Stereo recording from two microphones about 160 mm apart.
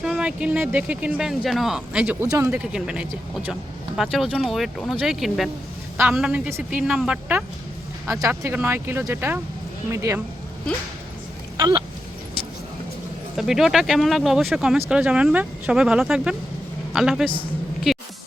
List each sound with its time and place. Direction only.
0.0 s speech: 5° right (ahead or behind)
2.2 s speech: 25° right (ahead or behind)
2.5 s a woman's voice: 5° right (ahead or behind)
11.5 s speech: 25° right (ahead or behind)
13.3 s speech: 5° right (ahead or behind)